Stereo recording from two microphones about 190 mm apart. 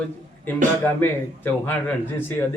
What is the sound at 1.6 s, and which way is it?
Speech, 10° left (ahead or behind).